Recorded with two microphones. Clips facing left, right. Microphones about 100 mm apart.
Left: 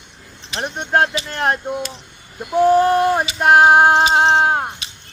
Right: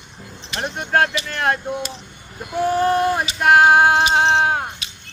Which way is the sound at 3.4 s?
35° left (ahead or behind).